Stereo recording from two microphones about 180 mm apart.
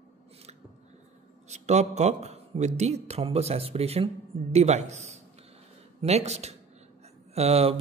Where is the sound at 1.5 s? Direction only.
40° right (ahead or behind).